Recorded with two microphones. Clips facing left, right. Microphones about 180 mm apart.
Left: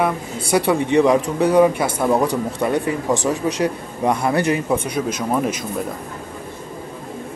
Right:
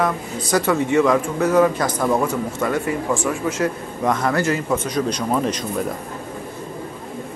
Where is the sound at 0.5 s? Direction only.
15° left (ahead or behind).